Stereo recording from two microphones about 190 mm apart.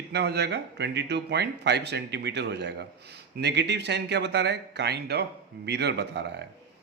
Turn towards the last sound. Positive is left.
turn(degrees=-65)  # may be behind; listen again after turning